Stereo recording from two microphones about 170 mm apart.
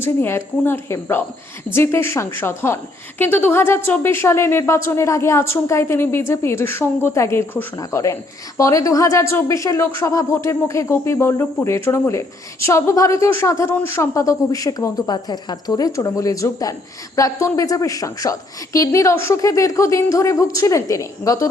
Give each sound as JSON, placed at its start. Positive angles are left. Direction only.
{"t": 0.0, "sound": "a woman's voice", "side_deg": 15}